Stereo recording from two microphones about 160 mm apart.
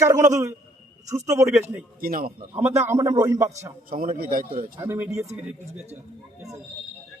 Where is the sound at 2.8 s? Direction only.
20° right (ahead or behind).